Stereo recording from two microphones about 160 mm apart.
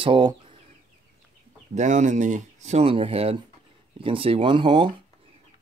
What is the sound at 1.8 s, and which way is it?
Speech, 50° right (ahead or behind).